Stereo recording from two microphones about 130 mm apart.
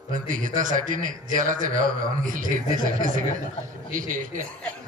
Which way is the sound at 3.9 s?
90° right.